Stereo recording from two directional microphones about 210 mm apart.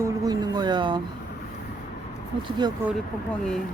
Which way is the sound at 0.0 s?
20° right (ahead or behind).